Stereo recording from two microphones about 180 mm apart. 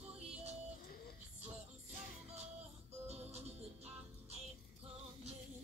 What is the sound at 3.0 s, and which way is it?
Music, 35° right (ahead or behind).